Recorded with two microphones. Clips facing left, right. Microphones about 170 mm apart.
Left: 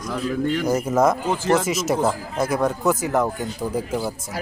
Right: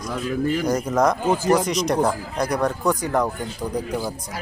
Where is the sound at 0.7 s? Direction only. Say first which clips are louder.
Left 3 dB; 5° left (ahead or behind).